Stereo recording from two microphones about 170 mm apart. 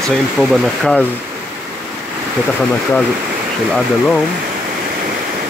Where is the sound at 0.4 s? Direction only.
Centre (ahead or behind).